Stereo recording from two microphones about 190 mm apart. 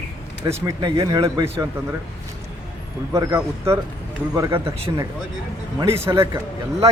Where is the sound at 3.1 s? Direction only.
15° right (ahead or behind).